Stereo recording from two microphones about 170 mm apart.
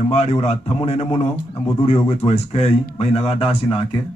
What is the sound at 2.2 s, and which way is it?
Speech, 25° left (ahead or behind).